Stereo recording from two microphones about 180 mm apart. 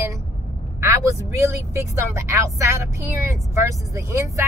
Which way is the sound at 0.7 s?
15° right (ahead or behind).